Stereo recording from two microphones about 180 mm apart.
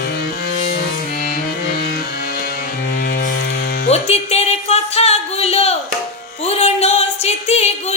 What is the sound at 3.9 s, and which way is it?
Music, 35° left (ahead or behind).